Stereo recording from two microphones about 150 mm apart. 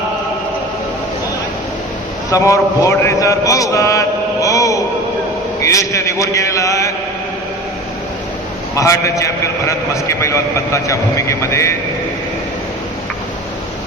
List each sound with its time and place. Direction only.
2.3 s a man's voice: 20° left (ahead or behind)
8.7 s a man's voice: 20° left (ahead or behind)